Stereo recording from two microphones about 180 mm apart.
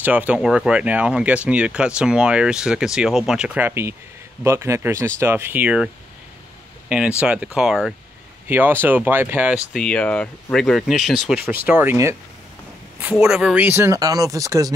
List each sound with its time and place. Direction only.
0.0 s speech: 10° right (ahead or behind)
6.9 s speech: 5° right (ahead or behind)
9.8 s speech: 5° left (ahead or behind); by 12.2 s 10° right (ahead or behind)
13.2 s speech: 5° right (ahead or behind)